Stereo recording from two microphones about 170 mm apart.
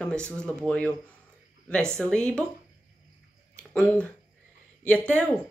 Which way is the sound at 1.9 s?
5° left (ahead or behind).